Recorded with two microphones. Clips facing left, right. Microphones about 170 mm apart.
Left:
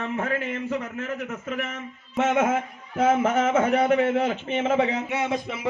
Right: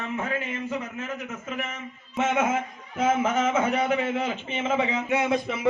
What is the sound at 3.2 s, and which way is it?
A man's voice, 65° left (ahead or behind).